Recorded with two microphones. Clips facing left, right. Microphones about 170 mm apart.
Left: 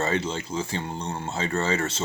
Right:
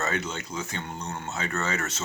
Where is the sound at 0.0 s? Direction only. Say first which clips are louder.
Left 4 dB; 30° left (ahead or behind).